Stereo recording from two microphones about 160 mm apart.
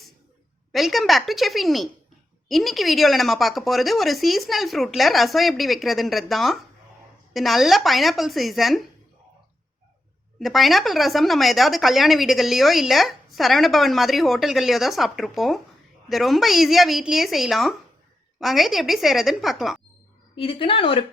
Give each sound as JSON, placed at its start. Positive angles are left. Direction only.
{"t": 0.7, "sound": "speech", "side_deg": 0}
{"t": 10.4, "sound": "speech", "side_deg": 0}
{"t": 20.3, "sound": "speech", "side_deg": 35}